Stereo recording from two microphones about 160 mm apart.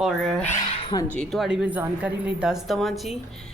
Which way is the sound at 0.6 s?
35° left (ahead or behind).